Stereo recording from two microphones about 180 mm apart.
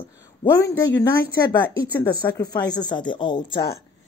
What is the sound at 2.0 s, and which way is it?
Speech, 20° left (ahead or behind).